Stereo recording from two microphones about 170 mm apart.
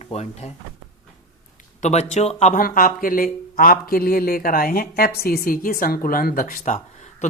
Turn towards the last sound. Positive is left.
turn(degrees=45)  # may be behind; listen again after turning